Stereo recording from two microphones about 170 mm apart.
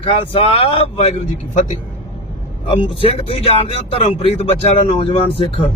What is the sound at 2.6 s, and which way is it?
Speech, 30° left (ahead or behind).